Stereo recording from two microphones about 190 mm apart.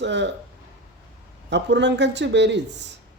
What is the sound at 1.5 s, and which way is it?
Speech, 65° right (ahead or behind).